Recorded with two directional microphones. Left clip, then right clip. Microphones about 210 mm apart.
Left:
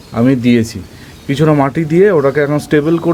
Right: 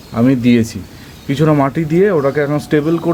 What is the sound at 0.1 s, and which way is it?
Speech, 5° left (ahead or behind).